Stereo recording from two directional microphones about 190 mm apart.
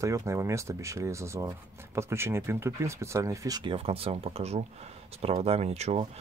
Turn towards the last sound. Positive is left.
turn(degrees=-35)  # may be behind; listen again after turning